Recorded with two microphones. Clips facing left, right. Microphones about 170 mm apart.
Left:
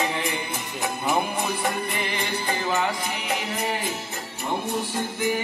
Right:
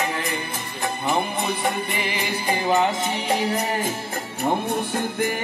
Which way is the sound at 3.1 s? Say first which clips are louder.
Right 6 dB; 35° right (ahead or behind).